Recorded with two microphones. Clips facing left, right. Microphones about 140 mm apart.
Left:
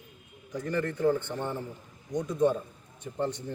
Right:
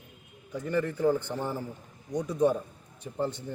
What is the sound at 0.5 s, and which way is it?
A man's voice, 5° right (ahead or behind).